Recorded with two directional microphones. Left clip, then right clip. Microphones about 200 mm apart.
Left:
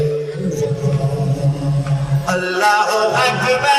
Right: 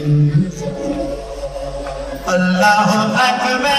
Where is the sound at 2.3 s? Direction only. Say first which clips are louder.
Right 2 dB; 20° left (ahead or behind).